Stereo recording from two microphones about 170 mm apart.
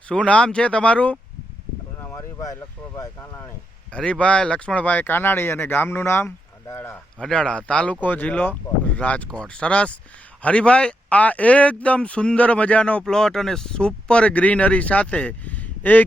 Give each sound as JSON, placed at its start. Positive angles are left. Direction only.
{"t": 0.1, "sound": "speech", "side_deg": 5}